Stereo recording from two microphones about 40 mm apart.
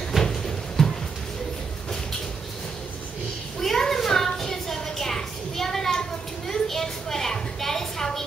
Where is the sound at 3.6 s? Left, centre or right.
Centre.